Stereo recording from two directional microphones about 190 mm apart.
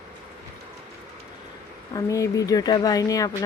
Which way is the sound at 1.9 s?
15° left (ahead or behind).